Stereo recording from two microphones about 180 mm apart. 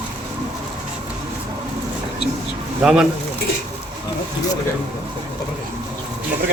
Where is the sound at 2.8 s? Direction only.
5° right (ahead or behind).